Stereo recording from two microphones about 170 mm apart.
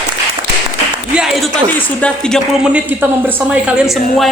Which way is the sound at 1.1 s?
Centre (ahead or behind).